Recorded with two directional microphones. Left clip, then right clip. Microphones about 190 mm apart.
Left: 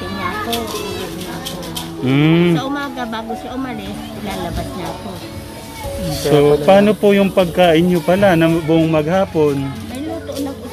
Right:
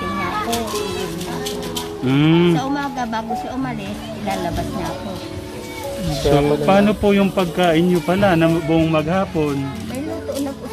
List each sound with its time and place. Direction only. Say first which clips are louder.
2.0 s speech: left 2 dB; 25° left (ahead or behind)
2.5 s a man's voice: left 1 dB; centre (ahead or behind)
6.3 s speech: left 5 dB; 25° left (ahead or behind)